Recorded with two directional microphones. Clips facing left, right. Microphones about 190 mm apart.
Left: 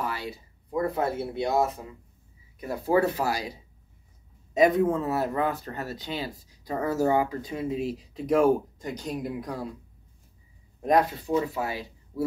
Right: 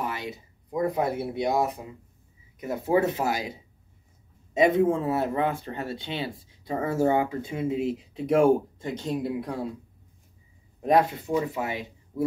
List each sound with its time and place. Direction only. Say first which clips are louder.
0.0 s speech: even; 20° right (ahead or behind)
4.6 s speech: even; 25° right (ahead or behind)
11.0 s speech: even; 20° right (ahead or behind)